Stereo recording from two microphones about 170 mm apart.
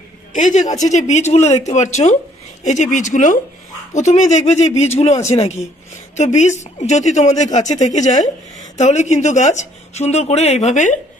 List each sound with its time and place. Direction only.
0.3 s speech: 45° left (ahead or behind)